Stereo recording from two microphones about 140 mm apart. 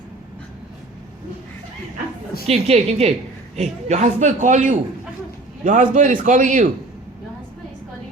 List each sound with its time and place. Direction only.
2.5 s a woman's voice: 50° right (ahead or behind); by 6.7 s 65° right (ahead or behind)